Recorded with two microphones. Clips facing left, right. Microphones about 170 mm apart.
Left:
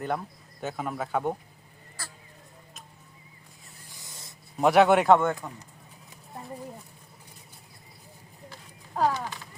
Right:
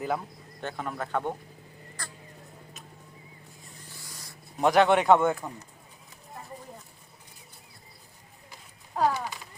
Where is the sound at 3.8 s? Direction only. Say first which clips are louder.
Left 1 dB; 20° left (ahead or behind).